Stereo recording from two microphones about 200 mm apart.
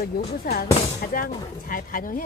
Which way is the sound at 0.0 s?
50° left (ahead or behind).